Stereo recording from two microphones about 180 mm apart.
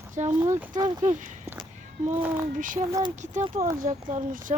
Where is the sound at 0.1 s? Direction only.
45° right (ahead or behind).